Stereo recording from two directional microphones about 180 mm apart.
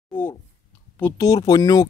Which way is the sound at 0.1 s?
10° left (ahead or behind).